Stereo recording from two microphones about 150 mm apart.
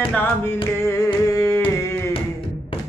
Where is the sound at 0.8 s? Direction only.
20° left (ahead or behind).